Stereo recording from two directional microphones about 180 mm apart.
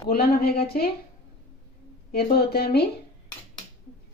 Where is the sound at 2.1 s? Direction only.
60° left (ahead or behind).